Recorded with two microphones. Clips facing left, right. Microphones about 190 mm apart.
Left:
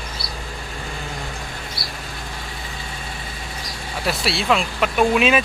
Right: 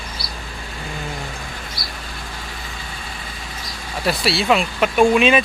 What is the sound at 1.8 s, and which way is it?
Vehicle, 25° left (ahead or behind).